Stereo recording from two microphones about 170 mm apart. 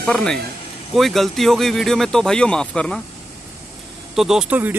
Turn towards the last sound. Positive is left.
turn(degrees=-10)  # may be behind; listen again after turning